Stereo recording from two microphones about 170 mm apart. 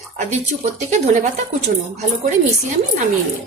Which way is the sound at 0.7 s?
45° right (ahead or behind).